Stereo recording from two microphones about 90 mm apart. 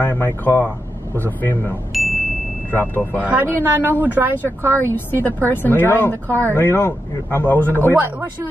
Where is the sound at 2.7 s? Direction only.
20° left (ahead or behind).